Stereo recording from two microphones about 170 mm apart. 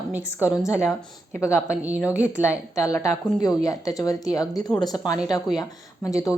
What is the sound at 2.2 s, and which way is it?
A woman's voice, 15° left (ahead or behind).